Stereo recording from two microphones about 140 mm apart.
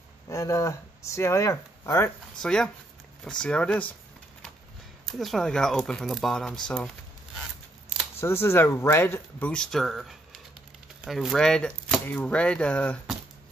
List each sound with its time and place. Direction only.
0.3 s speech: 25° left (ahead or behind)
2.4 s speech: 5° left (ahead or behind)
5.0 s speech: centre (ahead or behind)
8.2 s speech: 20° left (ahead or behind)